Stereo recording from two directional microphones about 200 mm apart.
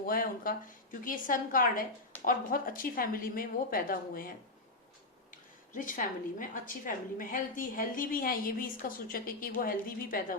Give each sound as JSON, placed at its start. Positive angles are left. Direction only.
{"t": 0.0, "sound": "a woman's voice", "side_deg": 45}
{"t": 5.3, "sound": "a woman's voice", "side_deg": 40}